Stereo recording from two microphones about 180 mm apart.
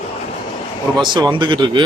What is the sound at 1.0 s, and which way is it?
Speech, 25° right (ahead or behind).